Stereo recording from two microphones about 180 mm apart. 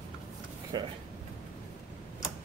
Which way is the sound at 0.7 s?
25° right (ahead or behind).